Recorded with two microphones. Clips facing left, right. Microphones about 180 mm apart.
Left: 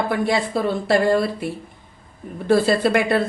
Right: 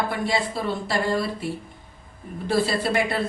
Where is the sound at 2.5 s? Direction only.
55° left (ahead or behind).